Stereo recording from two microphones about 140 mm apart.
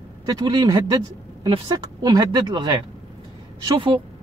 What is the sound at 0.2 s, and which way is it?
A woman's voice, 30° right (ahead or behind).